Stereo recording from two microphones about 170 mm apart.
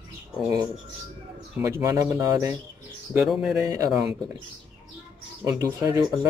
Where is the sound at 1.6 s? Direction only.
20° right (ahead or behind).